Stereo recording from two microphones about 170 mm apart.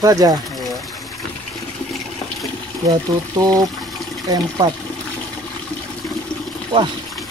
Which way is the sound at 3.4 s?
20° right (ahead or behind).